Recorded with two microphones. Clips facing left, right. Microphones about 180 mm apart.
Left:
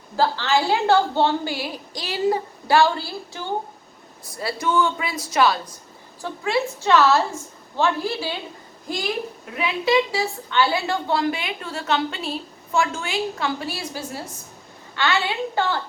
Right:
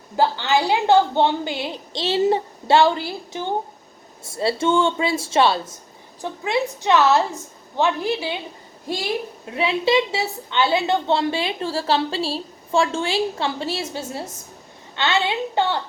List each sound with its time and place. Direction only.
0.2 s a woman's voice: 20° right (ahead or behind)
9.5 s a woman's voice: 30° right (ahead or behind)